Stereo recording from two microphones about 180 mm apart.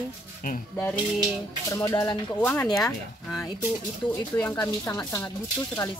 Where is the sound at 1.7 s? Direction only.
15° left (ahead or behind); by 3.4 s centre (ahead or behind).